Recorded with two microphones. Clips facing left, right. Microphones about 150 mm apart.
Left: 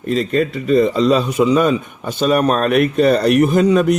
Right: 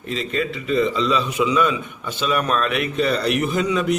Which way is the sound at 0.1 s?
45° left (ahead or behind).